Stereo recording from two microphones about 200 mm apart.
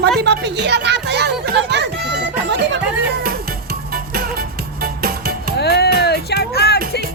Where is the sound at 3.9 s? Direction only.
50° right (ahead or behind).